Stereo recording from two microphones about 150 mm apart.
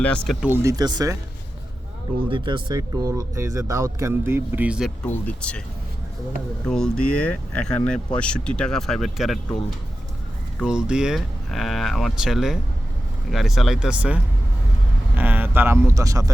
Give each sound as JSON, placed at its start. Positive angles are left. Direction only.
{"t": 0.4, "sound": "speech", "side_deg": -15}
{"t": 2.3, "sound": "speech", "side_deg": -30}
{"t": 5.0, "sound": "speech", "side_deg": 10}
{"t": 6.7, "sound": "speech", "side_deg": 5}